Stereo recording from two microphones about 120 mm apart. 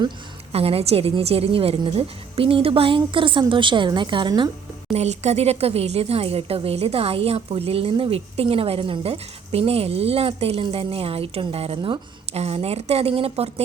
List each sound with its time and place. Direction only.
0.5 s a woman's voice: 55° right (ahead or behind); by 4.5 s 35° right (ahead or behind)
4.9 s speech: 65° right (ahead or behind)